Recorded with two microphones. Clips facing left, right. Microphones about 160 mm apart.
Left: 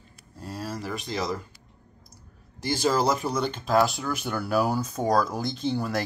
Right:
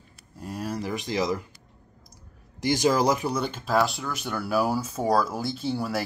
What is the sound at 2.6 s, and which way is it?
Speech, 15° right (ahead or behind).